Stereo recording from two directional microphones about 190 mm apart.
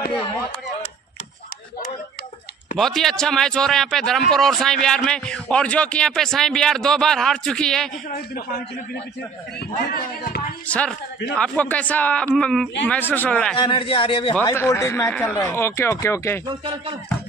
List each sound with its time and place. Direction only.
2.8 s a man's voice: centre (ahead or behind)
8.1 s a man's voice: 55° left (ahead or behind)
9.8 s speech: 55° left (ahead or behind)
10.7 s a man's voice: 5° left (ahead or behind)
13.6 s speech: 25° left (ahead or behind)
14.3 s speech: 15° left (ahead or behind)
16.4 s speech: 30° right (ahead or behind)